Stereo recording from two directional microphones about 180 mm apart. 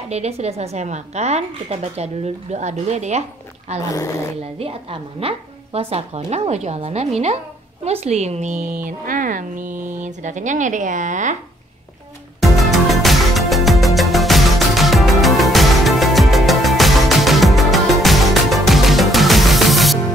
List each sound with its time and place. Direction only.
0.1 s a woman's voice: 35° right (ahead or behind)
3.9 s speech: 15° left (ahead or behind)
4.6 s a woman's voice: 30° right (ahead or behind)
12.4 s music: centre (ahead or behind)